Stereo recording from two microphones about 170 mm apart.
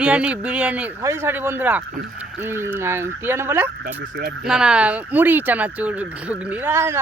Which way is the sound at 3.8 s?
60° right (ahead or behind).